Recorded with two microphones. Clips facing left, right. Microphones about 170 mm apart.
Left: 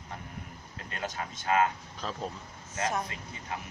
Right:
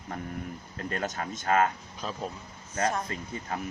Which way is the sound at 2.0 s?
10° right (ahead or behind).